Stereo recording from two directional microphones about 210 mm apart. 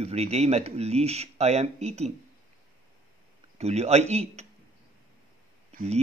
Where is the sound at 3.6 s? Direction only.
30° right (ahead or behind).